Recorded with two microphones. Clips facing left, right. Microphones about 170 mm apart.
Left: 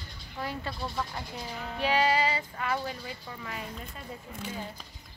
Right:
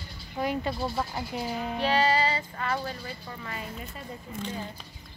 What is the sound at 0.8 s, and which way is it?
Speech, 30° right (ahead or behind).